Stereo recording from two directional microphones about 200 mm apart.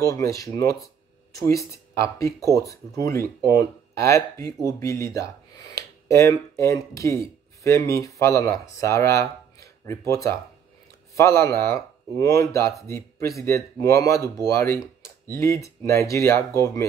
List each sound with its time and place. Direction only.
0.0 s speech: 15° left (ahead or behind)